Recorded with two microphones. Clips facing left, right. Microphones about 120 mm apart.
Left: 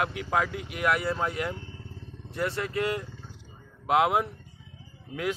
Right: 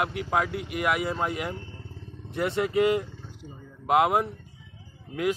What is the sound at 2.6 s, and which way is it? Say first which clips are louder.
Speech: right 6 dB; 10° right (ahead or behind).